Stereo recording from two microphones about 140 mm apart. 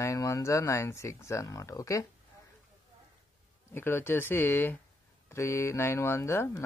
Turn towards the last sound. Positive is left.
turn(degrees=15)  # may be behind; listen again after turning